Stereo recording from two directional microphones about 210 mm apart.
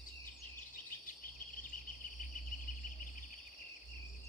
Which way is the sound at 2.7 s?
40° left (ahead or behind).